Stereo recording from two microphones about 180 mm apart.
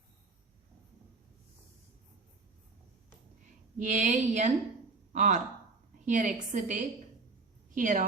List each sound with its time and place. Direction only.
3.8 s a woman's voice: 45° right (ahead or behind)